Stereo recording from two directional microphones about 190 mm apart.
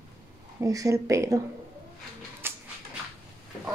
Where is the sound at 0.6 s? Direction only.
15° right (ahead or behind).